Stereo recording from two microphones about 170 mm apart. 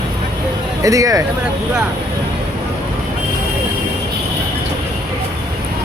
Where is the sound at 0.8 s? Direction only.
20° right (ahead or behind).